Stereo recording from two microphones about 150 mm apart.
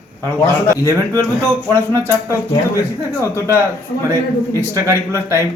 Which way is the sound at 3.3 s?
20° right (ahead or behind).